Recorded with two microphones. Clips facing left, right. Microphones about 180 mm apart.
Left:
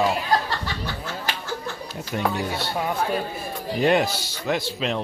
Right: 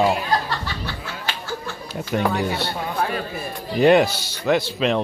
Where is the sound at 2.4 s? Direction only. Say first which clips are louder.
Right 4 dB; 65° right (ahead or behind).